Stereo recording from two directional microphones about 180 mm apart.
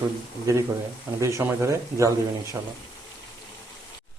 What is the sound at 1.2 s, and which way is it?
Speech, 15° right (ahead or behind).